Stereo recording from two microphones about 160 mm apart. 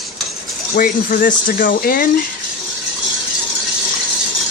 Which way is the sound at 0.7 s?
60° left (ahead or behind).